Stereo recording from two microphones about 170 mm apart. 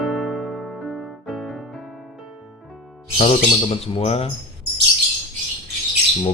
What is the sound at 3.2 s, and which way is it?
Speech, 40° left (ahead or behind).